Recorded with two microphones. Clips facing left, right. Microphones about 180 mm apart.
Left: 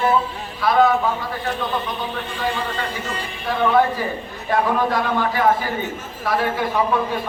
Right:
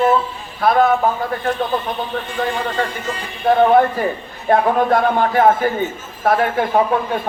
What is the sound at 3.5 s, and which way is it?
A man's voice, 50° right (ahead or behind).